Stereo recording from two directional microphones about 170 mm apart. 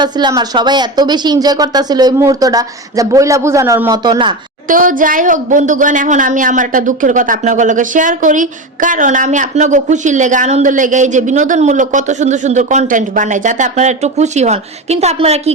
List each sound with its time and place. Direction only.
0.0 s speech: 25° right (ahead or behind)
4.7 s a woman's voice: 55° right (ahead or behind)